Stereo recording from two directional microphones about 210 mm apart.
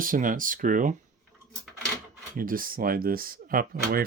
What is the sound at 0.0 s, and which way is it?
Speech, 40° right (ahead or behind).